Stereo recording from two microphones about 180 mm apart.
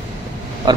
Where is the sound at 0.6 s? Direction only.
25° right (ahead or behind).